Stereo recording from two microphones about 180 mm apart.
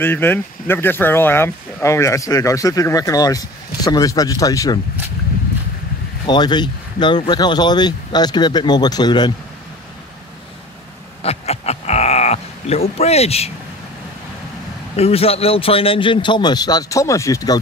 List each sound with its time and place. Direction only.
0.0 s speech: 10° left (ahead or behind)
6.2 s speech: 25° left (ahead or behind)
11.2 s sheep: 35° left (ahead or behind)
12.9 s speech: 35° left (ahead or behind)
15.0 s speech: 35° left (ahead or behind); by 17.6 s 20° left (ahead or behind)